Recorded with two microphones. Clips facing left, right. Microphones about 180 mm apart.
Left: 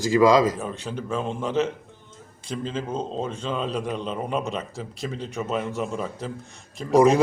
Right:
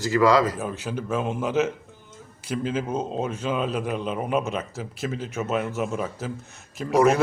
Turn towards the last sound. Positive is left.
turn(degrees=-5)  # may be behind; listen again after turning